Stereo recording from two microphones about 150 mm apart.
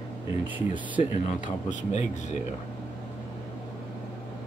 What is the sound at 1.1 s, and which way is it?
Speech, 55° left (ahead or behind).